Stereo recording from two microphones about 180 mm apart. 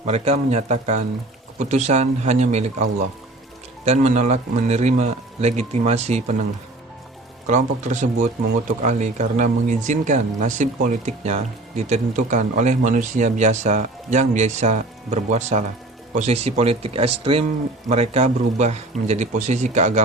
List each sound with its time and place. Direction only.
0.0 s speech: 35° right (ahead or behind)
7.4 s speech: 40° right (ahead or behind)